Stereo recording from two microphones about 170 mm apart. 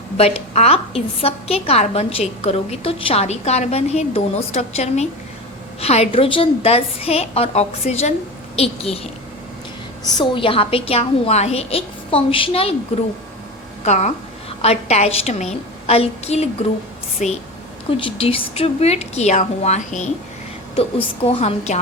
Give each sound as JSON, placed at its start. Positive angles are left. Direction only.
{"t": 0.2, "sound": "a woman's voice", "side_deg": 35}
{"t": 10.1, "sound": "a woman's voice", "side_deg": 25}
{"t": 13.8, "sound": "a woman's voice", "side_deg": 40}
{"t": 17.9, "sound": "a woman's voice", "side_deg": 35}
{"t": 20.7, "sound": "a woman's voice", "side_deg": 35}